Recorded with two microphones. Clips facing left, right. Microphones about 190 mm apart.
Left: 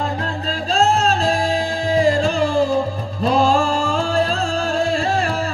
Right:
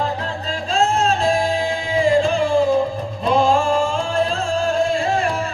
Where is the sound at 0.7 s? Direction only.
35° left (ahead or behind).